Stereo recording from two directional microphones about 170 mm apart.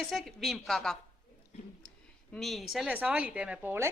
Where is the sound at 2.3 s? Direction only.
Centre (ahead or behind).